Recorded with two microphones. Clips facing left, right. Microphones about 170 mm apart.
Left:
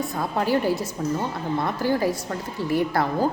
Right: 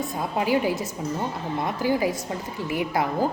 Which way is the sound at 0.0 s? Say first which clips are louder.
Left 1 dB; 10° right (ahead or behind).